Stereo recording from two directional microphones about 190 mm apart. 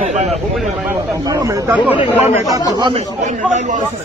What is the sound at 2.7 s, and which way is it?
Speech, 25° right (ahead or behind).